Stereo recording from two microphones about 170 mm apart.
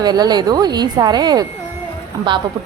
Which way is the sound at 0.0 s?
25° right (ahead or behind).